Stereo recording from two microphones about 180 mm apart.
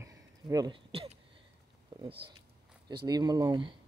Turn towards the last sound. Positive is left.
turn(degrees=-25)  # may be behind; listen again after turning